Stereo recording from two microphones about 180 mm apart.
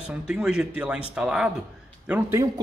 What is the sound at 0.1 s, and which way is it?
A man's voice, 5° right (ahead or behind).